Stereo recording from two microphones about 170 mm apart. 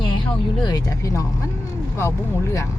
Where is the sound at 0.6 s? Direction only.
20° left (ahead or behind).